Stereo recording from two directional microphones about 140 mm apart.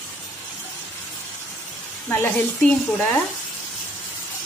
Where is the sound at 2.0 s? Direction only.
15° left (ahead or behind).